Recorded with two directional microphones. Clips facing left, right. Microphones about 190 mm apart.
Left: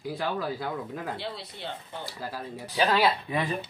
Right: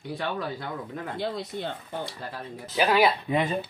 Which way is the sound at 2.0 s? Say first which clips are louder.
Even; 5° left (ahead or behind).